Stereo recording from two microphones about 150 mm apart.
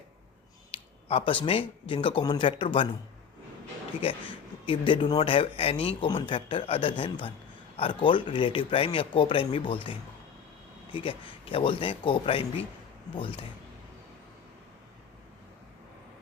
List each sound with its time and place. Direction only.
0.7 s speech: 40° left (ahead or behind)
4.0 s speech: 40° left (ahead or behind)